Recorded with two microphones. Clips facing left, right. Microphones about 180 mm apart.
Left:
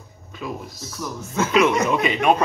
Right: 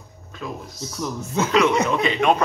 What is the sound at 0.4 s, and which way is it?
Speech, 5° left (ahead or behind).